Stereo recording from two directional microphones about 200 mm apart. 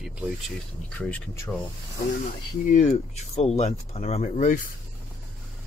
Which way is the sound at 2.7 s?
35° left (ahead or behind).